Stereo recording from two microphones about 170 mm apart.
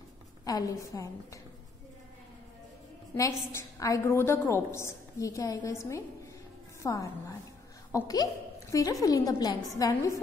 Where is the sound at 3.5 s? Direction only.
15° left (ahead or behind).